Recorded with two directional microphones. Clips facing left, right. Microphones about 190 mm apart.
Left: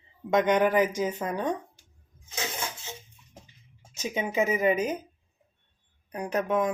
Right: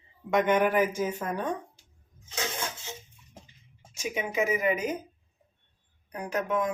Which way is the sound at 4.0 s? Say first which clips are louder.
Left 2 dB; 25° left (ahead or behind).